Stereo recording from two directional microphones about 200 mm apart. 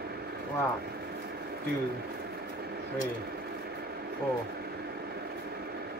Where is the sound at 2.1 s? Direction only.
50° right (ahead or behind).